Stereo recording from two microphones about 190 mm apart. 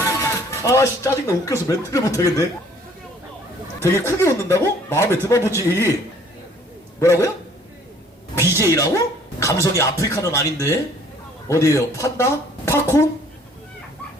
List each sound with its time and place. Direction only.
0.0 s speech: 15° left (ahead or behind)
3.8 s speech: 15° left (ahead or behind)
7.0 s speech: 15° left (ahead or behind)
8.4 s speech: 15° left (ahead or behind)